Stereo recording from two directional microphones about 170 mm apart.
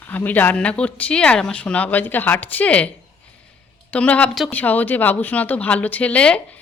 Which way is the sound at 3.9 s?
10° left (ahead or behind).